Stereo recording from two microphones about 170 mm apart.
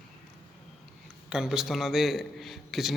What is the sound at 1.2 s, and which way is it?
A man's voice, 5° right (ahead or behind).